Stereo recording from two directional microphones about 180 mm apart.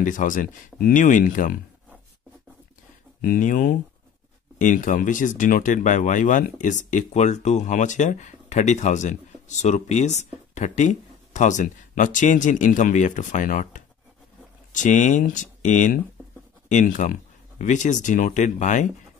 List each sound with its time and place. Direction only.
0.0 s speech: 45° left (ahead or behind)
3.2 s speech: 50° left (ahead or behind)